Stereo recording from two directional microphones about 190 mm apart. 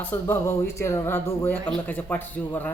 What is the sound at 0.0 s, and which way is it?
A man's voice, 10° left (ahead or behind).